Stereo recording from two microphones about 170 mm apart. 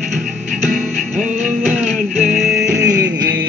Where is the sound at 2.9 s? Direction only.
90° right.